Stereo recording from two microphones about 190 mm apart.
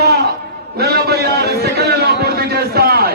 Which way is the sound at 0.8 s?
55° right (ahead or behind).